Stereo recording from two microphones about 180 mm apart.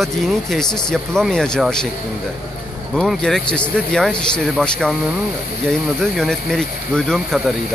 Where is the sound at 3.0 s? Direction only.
5° left (ahead or behind).